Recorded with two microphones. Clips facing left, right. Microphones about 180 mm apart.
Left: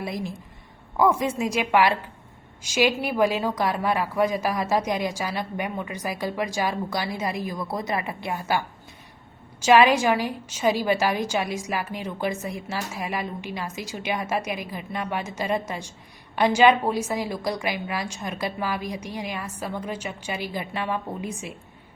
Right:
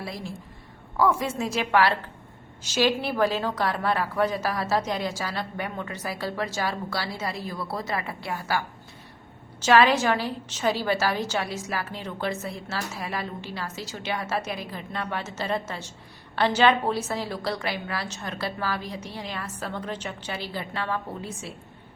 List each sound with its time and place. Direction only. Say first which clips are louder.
0.0 s a woman's voice: left 4 dB; 20° left (ahead or behind)